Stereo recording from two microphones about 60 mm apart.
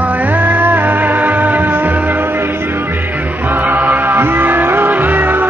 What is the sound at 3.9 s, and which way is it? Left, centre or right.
Music, right.